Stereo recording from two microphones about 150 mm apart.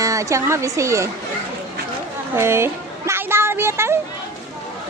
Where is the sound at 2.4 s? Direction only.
15° right (ahead or behind).